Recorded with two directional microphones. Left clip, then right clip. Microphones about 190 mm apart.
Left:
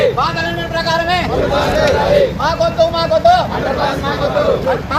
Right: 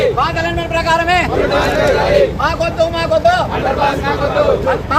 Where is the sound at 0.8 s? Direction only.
30° right (ahead or behind).